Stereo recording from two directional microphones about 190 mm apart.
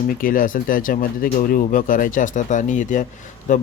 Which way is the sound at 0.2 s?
45° left (ahead or behind).